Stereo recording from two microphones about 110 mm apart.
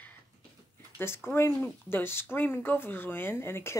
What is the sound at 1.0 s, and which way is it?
Speech, 20° left (ahead or behind).